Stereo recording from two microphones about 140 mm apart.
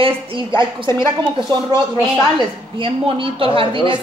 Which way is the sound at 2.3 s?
40° right (ahead or behind).